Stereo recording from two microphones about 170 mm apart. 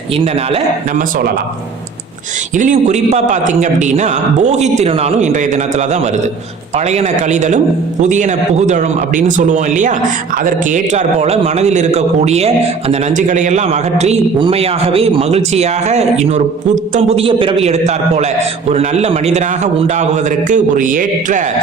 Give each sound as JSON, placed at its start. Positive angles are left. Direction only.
{"t": 2.6, "sound": "a man's voice", "side_deg": -45}